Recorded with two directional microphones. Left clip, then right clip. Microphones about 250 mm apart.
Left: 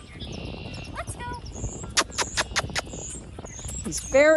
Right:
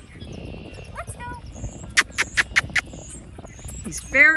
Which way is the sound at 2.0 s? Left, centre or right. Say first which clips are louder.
Right 5 dB; centre.